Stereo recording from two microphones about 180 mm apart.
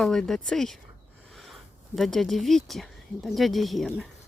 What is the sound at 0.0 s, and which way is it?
Speech, 5° left (ahead or behind).